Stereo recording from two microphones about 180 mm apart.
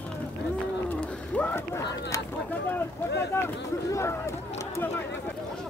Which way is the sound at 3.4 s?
15° left (ahead or behind).